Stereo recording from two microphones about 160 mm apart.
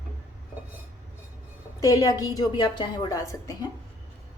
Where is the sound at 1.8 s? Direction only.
20° left (ahead or behind).